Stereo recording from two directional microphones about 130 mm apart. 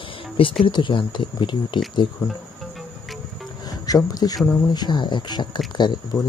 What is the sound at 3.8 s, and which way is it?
Speech, 30° left (ahead or behind).